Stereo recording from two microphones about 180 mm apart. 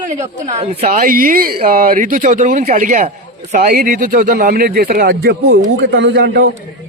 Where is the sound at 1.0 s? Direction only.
50° right (ahead or behind).